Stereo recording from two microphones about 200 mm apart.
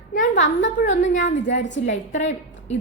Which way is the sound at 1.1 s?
65° left (ahead or behind).